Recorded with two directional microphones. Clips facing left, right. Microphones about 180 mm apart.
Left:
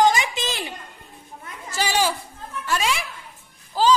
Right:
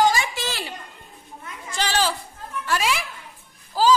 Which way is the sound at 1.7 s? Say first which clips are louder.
Left 1 dB; 10° left (ahead or behind).